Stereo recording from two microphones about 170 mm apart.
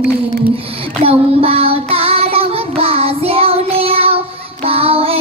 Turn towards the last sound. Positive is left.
turn(degrees=-35)  # may be behind; listen again after turning